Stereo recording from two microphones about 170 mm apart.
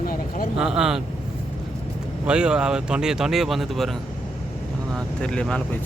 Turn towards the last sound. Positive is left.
turn(degrees=5)  # may be behind; listen again after turning